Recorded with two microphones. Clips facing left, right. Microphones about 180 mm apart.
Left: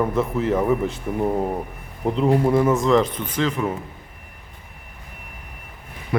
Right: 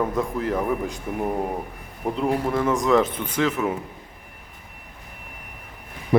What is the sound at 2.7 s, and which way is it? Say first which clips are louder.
Speech: left 2 dB; centre (ahead or behind).